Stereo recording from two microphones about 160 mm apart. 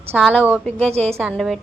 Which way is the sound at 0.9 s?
40° right (ahead or behind).